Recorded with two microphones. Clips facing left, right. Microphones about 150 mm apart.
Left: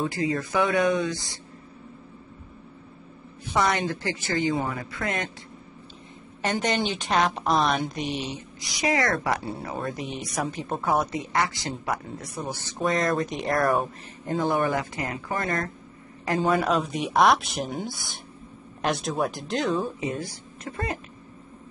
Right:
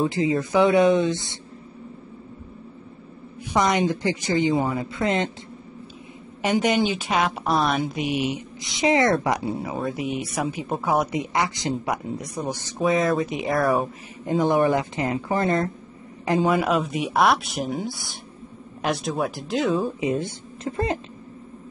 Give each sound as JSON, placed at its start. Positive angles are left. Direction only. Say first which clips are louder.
{"t": 0.0, "sound": "a woman's voice", "louder": "right 4 dB", "side_deg": -20}
{"t": 3.4, "sound": "a woman's voice", "louder": "right 4 dB", "side_deg": -15}
{"t": 6.4, "sound": "speech", "louder": "right 5 dB", "side_deg": -10}
{"t": 9.5, "sound": "speech", "louder": "right 4 dB", "side_deg": -5}
{"t": 14.2, "sound": "a woman's voice", "louder": "right 5 dB", "side_deg": -15}
{"t": 16.4, "sound": "speech", "louder": "left 1 dB", "side_deg": -5}